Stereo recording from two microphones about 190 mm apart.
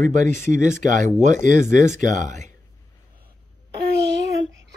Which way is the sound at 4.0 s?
65° right (ahead or behind).